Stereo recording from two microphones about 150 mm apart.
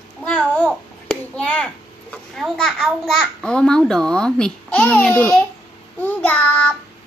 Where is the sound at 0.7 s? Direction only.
5° left (ahead or behind).